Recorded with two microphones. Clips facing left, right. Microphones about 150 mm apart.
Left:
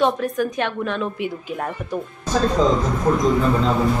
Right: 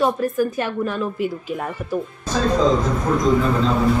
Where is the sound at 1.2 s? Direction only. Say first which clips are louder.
Right 3 dB; 65° left (ahead or behind).